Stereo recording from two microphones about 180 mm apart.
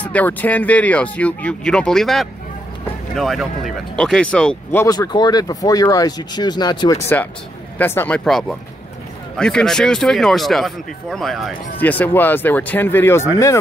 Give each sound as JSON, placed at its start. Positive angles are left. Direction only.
{"t": 0.0, "sound": "speech", "side_deg": 10}
{"t": 4.8, "sound": "speech", "side_deg": 20}
{"t": 7.8, "sound": "speech", "side_deg": 10}